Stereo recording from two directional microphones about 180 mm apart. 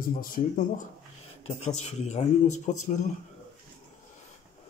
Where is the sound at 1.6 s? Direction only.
35° left (ahead or behind).